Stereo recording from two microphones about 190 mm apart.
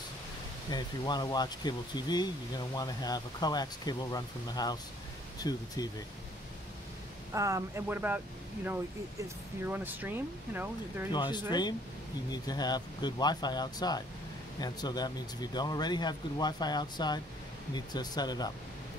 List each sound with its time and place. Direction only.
0.7 s speech: 20° left (ahead or behind)
7.3 s speech: 15° right (ahead or behind)
9.7 s speech: 10° right (ahead or behind)
11.1 s speech: 25° left (ahead or behind)